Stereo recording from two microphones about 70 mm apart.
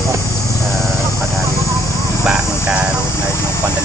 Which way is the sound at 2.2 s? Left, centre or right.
Centre.